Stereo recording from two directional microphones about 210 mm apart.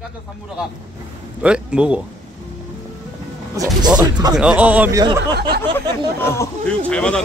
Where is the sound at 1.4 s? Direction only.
5° right (ahead or behind).